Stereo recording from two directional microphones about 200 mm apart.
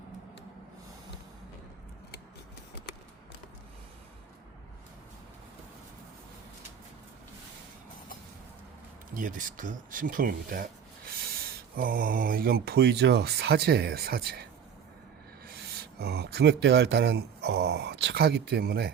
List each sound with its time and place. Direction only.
9.1 s speech: 40° right (ahead or behind)
15.4 s speech: 50° right (ahead or behind)